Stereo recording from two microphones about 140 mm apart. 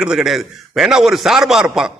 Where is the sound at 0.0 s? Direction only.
5° right (ahead or behind).